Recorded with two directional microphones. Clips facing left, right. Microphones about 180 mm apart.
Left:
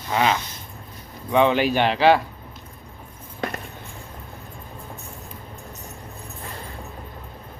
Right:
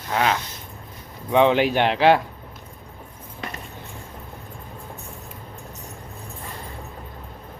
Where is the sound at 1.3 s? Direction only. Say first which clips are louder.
Right 1 dB; 20° right (ahead or behind).